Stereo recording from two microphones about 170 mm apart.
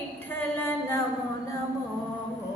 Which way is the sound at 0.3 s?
10° left (ahead or behind).